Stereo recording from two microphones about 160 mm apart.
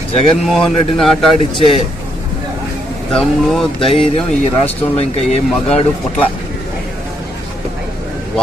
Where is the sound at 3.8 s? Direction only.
35° left (ahead or behind).